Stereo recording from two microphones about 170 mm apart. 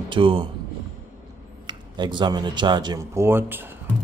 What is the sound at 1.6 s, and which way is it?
Speech, 25° right (ahead or behind).